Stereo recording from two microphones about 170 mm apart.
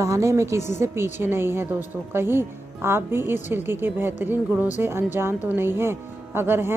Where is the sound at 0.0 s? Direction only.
15° right (ahead or behind).